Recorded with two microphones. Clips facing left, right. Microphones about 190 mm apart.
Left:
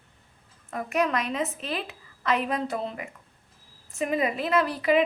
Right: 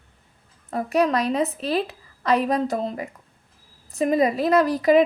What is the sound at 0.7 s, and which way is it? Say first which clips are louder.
A woman's voice: right 5 dB; 35° right (ahead or behind).